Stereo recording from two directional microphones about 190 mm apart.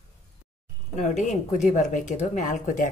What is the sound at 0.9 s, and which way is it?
Speech, 40° left (ahead or behind).